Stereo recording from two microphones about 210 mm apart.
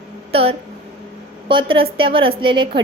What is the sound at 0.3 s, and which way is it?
A woman's voice, 25° right (ahead or behind).